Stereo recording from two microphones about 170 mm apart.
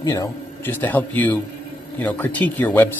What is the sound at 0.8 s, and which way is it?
Speech, 10° left (ahead or behind).